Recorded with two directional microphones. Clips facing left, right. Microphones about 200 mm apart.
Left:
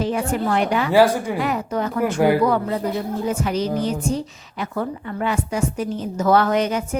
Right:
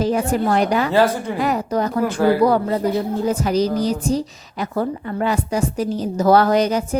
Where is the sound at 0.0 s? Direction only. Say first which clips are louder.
Right 3 dB; 40° right (ahead or behind).